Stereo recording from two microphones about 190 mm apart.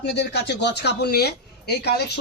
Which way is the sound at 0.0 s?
60° left (ahead or behind).